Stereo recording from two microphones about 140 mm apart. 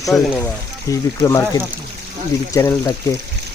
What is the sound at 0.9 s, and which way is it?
Speech, 25° left (ahead or behind).